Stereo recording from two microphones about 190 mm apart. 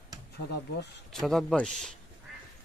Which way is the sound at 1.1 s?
Centre (ahead or behind).